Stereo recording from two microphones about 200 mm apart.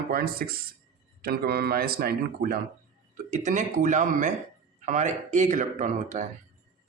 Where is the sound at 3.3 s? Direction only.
35° right (ahead or behind).